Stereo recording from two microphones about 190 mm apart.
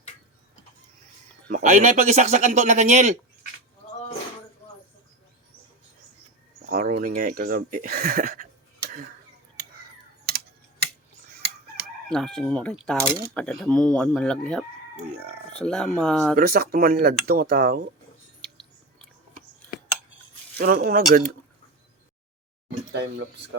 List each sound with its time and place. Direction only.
1.5 s speech: 40° right (ahead or behind)
6.7 s speech: 50° right (ahead or behind)
10.2 s tick-tock: 55° right (ahead or behind)
11.8 s speech: 5° left (ahead or behind)
16.3 s speech: 50° right (ahead or behind)
20.6 s speech: 50° right (ahead or behind)
22.9 s speech: 65° right (ahead or behind)